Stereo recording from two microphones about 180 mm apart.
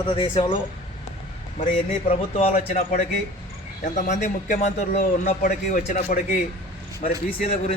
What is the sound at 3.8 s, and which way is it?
A man's voice, 45° left (ahead or behind).